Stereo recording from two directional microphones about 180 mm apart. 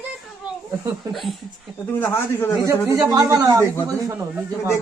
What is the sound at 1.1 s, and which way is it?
Speech, centre (ahead or behind).